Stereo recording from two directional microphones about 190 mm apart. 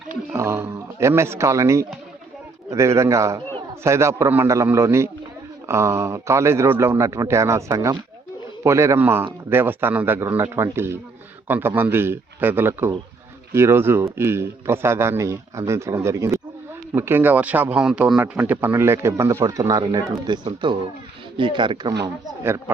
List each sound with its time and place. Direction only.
0.3 s a man's voice: 15° right (ahead or behind)
22.0 s a man's voice: 15° right (ahead or behind)